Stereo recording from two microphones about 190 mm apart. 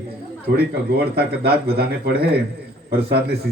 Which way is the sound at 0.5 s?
55° right (ahead or behind).